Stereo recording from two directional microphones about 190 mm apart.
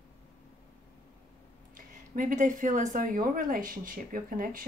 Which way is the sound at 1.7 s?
45° right (ahead or behind).